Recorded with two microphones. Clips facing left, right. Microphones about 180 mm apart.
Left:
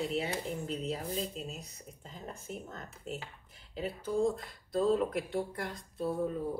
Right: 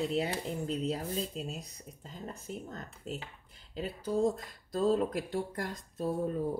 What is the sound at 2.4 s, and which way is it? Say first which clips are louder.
Speech: right 1 dB; 40° right (ahead or behind).